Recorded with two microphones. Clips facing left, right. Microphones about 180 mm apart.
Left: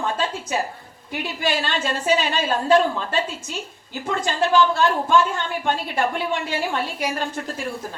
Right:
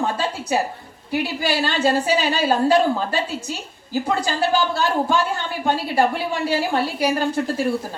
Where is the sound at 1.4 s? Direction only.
35° right (ahead or behind).